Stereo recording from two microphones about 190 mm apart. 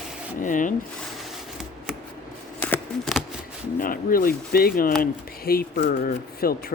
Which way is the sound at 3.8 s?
50° left (ahead or behind).